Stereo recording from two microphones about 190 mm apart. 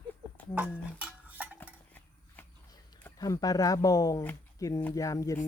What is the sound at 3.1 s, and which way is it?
Speech, 20° left (ahead or behind).